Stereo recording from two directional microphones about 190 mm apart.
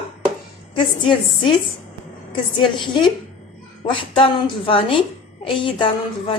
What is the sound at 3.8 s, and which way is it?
A woman's voice, 25° left (ahead or behind).